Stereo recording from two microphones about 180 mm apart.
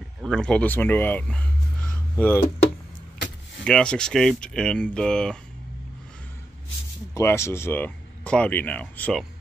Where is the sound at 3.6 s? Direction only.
5° left (ahead or behind).